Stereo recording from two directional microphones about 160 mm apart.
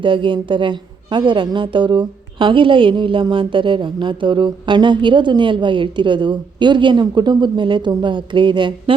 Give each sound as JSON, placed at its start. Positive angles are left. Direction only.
{"t": 0.0, "sound": "a woman's voice", "side_deg": -30}